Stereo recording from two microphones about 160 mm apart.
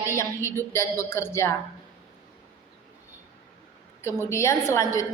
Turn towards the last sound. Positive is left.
turn(degrees=20)  # may be behind; listen again after turning